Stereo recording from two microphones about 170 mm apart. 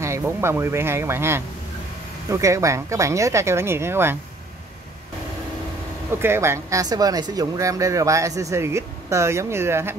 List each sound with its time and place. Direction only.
0.0 s speech: 15° right (ahead or behind)
6.2 s speech: 15° right (ahead or behind)